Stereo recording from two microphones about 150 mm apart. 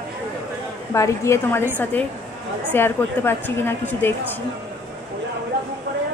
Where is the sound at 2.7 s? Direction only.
15° left (ahead or behind).